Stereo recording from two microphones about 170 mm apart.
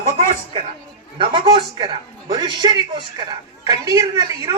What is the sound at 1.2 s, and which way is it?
A woman's voice, 30° right (ahead or behind).